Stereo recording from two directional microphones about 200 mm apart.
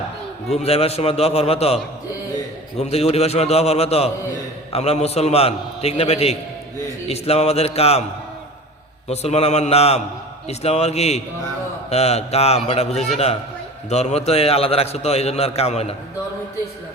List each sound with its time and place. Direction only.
0.5 s a man's voice: 30° left (ahead or behind)
9.0 s a man's voice: 30° left (ahead or behind)